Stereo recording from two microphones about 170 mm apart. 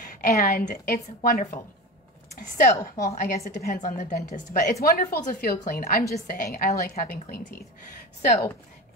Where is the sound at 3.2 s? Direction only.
60° left (ahead or behind).